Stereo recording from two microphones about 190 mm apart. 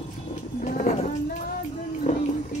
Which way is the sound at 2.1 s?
35° left (ahead or behind).